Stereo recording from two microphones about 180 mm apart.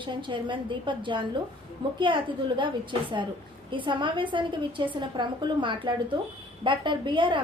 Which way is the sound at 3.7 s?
25° right (ahead or behind).